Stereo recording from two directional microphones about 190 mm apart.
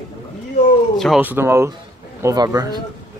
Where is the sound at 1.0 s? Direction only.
5° right (ahead or behind).